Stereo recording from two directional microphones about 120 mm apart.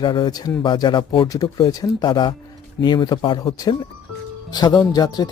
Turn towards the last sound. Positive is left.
turn(degrees=35)  # may be behind; listen again after turning